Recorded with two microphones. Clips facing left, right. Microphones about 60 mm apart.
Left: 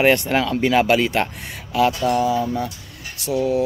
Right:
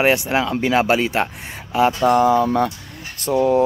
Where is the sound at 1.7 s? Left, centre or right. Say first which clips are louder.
Right 1 dB; right.